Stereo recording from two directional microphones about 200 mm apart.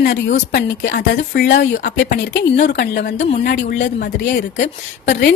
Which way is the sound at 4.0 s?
50° left (ahead or behind).